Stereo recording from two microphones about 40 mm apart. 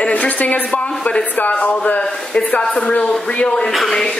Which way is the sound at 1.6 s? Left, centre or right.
Left.